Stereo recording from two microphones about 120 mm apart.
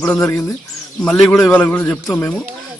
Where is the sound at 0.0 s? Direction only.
20° left (ahead or behind).